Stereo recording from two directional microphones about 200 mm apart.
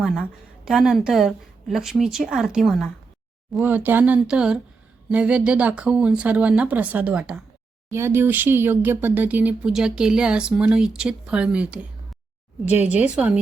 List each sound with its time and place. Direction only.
0.0 s a woman's voice: centre (ahead or behind)